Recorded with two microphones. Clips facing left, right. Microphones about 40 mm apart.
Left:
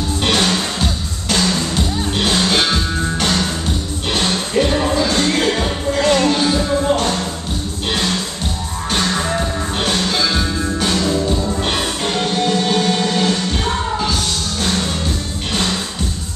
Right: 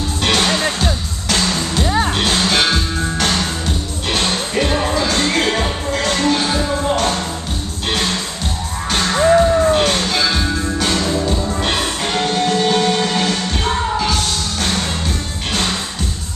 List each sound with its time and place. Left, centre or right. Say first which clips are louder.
1.3 s music: left 1 dB; centre
4.6 s music: left 2 dB; centre
6.0 s music: left 3 dB; centre
6.9 s music: right 2 dB; centre
8.9 s music: right 6 dB; centre
10.2 s music: even; centre
14.6 s music: left 1 dB; centre